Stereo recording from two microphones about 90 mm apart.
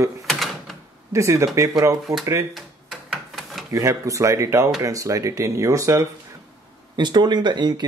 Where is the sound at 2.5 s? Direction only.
Centre (ahead or behind).